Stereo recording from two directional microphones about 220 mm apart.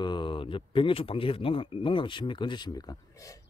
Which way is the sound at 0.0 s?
20° left (ahead or behind).